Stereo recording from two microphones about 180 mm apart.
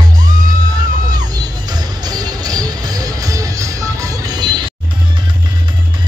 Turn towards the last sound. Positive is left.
turn(degrees=-25)  # may be behind; listen again after turning